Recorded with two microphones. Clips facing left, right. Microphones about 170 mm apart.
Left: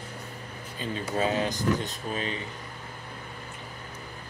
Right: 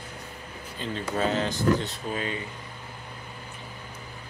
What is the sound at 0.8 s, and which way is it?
Speech, 15° left (ahead or behind).